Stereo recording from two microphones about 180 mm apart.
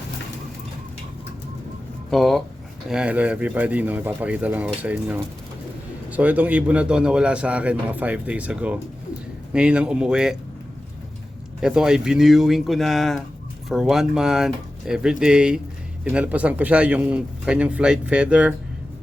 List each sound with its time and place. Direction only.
2.0 s a man's voice: centre (ahead or behind)
11.6 s a man's voice: 5° right (ahead or behind)